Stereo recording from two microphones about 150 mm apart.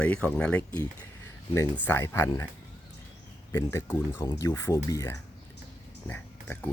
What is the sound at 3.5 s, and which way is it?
Speech, 15° left (ahead or behind).